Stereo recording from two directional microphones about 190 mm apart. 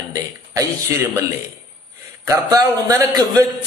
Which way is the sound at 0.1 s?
20° right (ahead or behind).